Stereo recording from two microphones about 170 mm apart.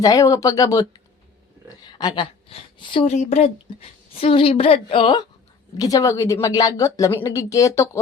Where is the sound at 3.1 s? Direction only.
40° left (ahead or behind); by 7.8 s 20° left (ahead or behind).